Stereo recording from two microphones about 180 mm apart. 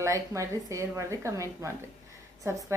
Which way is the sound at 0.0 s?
15° right (ahead or behind).